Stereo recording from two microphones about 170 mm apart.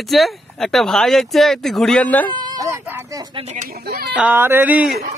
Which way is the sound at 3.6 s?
60° right (ahead or behind).